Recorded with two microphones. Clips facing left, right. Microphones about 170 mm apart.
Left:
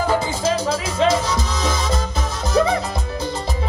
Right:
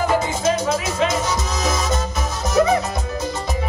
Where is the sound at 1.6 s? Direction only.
30° left (ahead or behind).